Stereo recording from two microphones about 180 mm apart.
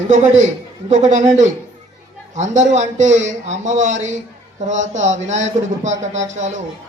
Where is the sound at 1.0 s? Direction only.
40° right (ahead or behind).